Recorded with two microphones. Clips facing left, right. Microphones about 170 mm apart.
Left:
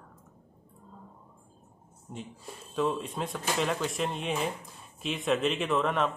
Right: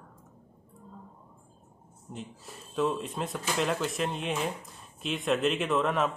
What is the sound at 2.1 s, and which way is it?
Speech, centre (ahead or behind).